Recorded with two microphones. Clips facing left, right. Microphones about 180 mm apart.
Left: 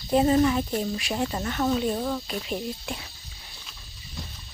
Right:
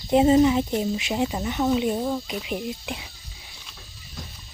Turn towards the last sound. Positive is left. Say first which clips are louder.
# right 1 dB
turn(degrees=-15)  # may be behind; listen again after turning